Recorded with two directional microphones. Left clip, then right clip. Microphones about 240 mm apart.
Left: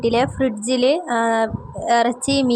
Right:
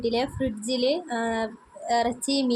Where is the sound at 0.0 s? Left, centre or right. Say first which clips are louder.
Left 8 dB; left.